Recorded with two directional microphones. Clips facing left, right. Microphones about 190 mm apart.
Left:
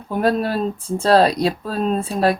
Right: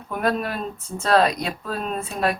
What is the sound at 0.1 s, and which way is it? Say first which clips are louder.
Speech: left 5 dB; 30° left (ahead or behind).